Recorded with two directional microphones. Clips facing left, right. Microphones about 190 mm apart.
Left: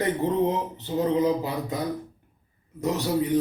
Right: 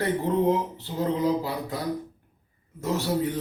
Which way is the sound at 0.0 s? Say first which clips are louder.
Even; 20° left (ahead or behind).